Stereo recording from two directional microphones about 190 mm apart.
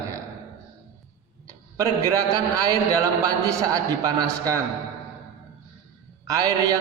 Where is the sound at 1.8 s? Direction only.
20° right (ahead or behind).